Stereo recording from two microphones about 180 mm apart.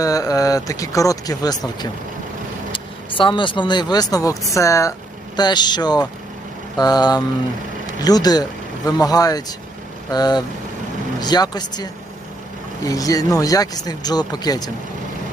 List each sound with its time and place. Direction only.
0.0 s speech: 20° left (ahead or behind)